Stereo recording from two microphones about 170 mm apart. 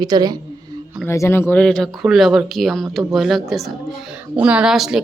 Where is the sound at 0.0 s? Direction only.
25° right (ahead or behind).